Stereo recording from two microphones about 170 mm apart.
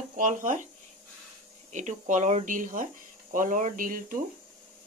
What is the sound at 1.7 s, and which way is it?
A woman's voice, 45° right (ahead or behind).